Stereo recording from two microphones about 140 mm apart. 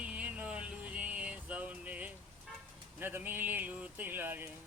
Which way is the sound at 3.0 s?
15° right (ahead or behind).